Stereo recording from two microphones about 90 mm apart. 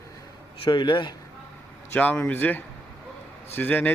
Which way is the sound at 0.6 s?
60° left (ahead or behind).